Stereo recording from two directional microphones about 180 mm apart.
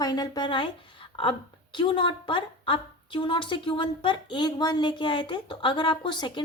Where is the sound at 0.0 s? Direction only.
20° left (ahead or behind).